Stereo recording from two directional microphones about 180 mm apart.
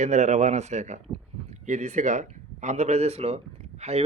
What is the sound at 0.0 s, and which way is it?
Speech, 40° right (ahead or behind).